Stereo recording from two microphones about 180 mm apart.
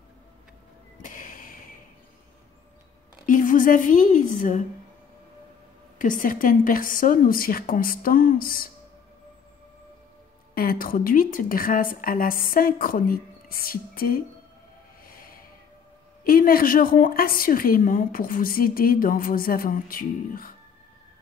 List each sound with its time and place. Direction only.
1.0 s a sound: 45° left (ahead or behind)
3.3 s a woman's voice: 45° left (ahead or behind)
5.9 s a woman's voice: 45° left (ahead or behind)
10.5 s a woman's voice: 55° left (ahead or behind)
15.0 s snort: 55° left (ahead or behind)
16.3 s a woman's voice: 55° left (ahead or behind)